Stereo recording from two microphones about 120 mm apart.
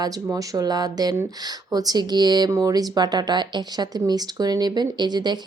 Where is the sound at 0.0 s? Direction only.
30° right (ahead or behind).